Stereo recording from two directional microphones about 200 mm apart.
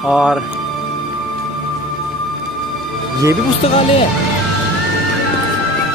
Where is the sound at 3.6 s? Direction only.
30° left (ahead or behind).